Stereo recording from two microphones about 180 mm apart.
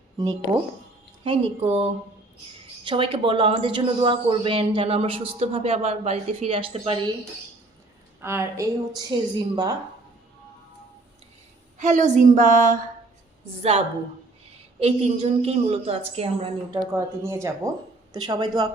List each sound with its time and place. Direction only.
1.2 s speech: 30° right (ahead or behind)
8.2 s a woman's voice: 15° right (ahead or behind)
11.8 s a woman's voice: 40° right (ahead or behind)
13.6 s speech: 35° right (ahead or behind)
16.7 s a woman's voice: 15° right (ahead or behind)